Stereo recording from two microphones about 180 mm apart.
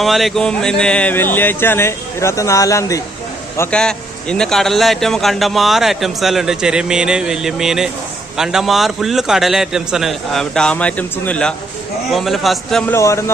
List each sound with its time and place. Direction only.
0.0 s a man's voice: centre (ahead or behind)
12.9 s speech: 15° left (ahead or behind)